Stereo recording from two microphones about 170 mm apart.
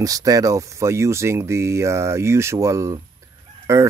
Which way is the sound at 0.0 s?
20° right (ahead or behind).